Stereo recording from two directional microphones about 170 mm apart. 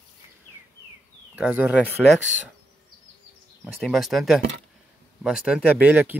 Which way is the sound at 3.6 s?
Centre (ahead or behind).